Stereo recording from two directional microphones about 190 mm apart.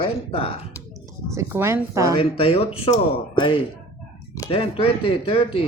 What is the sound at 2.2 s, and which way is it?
Speech, 30° left (ahead or behind).